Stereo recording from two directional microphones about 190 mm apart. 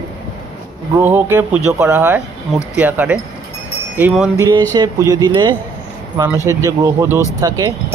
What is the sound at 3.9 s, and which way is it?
Wind chime, 5° right (ahead or behind).